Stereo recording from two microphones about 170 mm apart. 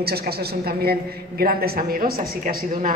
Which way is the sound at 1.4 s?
60° right (ahead or behind).